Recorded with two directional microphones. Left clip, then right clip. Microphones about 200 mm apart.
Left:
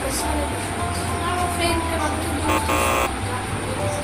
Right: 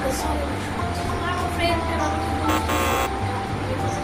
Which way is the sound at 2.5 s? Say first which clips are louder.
Left 3 dB; centre (ahead or behind).